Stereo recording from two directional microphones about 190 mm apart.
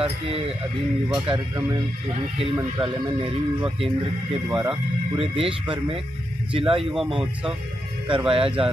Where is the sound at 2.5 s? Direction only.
25° right (ahead or behind).